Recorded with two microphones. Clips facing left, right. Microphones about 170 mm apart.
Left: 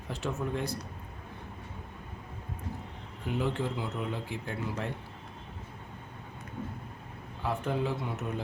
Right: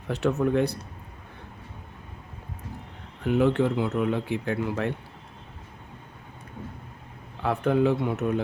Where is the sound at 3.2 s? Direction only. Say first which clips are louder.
Right 10 dB; 65° right (ahead or behind).